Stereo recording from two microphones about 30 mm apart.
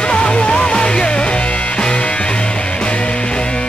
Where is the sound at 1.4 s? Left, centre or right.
Left.